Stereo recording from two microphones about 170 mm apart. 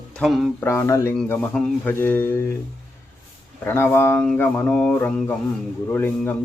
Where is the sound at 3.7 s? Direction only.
15° left (ahead or behind).